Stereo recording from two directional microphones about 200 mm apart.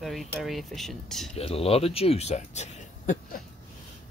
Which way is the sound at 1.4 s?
30° left (ahead or behind).